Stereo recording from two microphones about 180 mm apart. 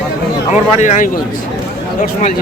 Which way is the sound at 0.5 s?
40° left (ahead or behind).